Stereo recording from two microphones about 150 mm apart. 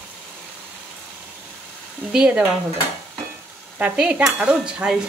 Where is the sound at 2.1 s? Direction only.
5° right (ahead or behind).